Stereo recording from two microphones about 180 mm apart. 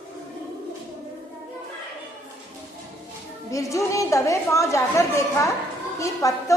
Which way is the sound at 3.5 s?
20° left (ahead or behind).